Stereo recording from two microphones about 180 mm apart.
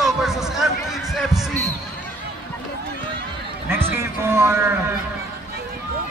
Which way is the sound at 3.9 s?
15° right (ahead or behind).